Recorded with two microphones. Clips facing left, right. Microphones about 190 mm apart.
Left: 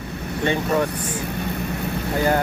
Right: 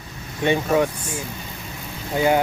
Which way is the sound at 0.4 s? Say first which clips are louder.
Right 2 dB; 15° right (ahead or behind).